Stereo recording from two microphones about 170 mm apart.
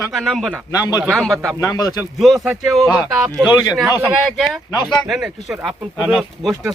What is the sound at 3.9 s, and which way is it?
Speech, 15° right (ahead or behind).